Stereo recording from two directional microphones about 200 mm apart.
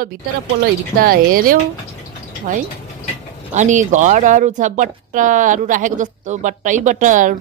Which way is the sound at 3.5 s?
40° right (ahead or behind).